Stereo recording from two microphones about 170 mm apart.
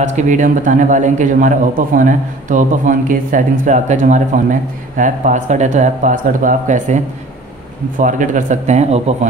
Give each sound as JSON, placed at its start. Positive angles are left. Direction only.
{"t": 0.0, "sound": "a man's voice", "side_deg": -45}
{"t": 8.0, "sound": "a man's voice", "side_deg": -50}